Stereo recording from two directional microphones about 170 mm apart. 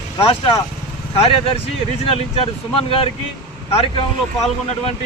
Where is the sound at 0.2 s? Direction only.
25° left (ahead or behind).